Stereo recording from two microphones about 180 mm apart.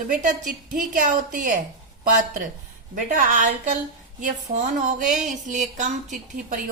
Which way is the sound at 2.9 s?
45° right (ahead or behind).